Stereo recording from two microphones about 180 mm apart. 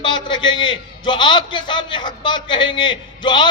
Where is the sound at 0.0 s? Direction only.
25° left (ahead or behind).